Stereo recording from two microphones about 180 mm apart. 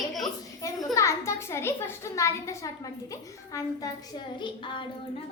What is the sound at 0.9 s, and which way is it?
A child's voice, 15° left (ahead or behind).